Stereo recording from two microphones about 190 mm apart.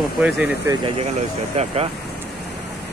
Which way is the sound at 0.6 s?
25° right (ahead or behind).